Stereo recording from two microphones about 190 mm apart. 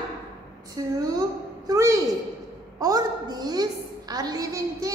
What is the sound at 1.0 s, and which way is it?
A woman's voice, 20° right (ahead or behind).